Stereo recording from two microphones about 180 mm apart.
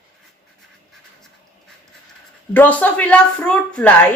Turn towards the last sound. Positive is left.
turn(degrees=5)  # may be behind; listen again after turning